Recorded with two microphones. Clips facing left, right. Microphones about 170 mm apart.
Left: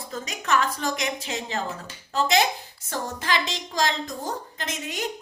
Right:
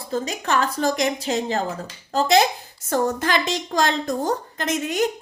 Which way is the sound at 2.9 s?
50° right (ahead or behind).